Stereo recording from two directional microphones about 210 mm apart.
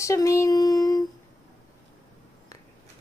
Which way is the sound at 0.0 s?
15° left (ahead or behind).